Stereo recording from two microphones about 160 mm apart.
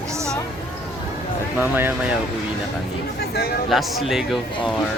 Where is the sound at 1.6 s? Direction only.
10° right (ahead or behind).